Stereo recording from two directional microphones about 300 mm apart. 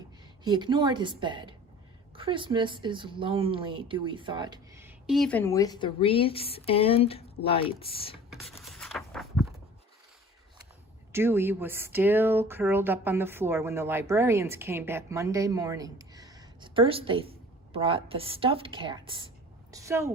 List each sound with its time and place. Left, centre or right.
0.4 s speech: centre
8.3 s writing: centre
11.1 s a woman's voice: centre